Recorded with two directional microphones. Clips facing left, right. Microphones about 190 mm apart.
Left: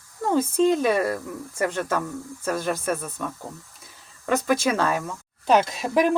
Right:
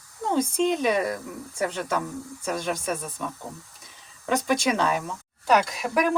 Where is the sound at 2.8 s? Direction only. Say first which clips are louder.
Left 3 dB; 5° left (ahead or behind).